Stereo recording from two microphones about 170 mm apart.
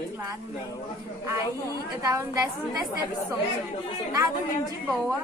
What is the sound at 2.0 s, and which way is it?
Speech, 20° right (ahead or behind).